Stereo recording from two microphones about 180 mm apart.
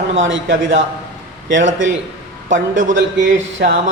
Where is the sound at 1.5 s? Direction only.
45° right (ahead or behind).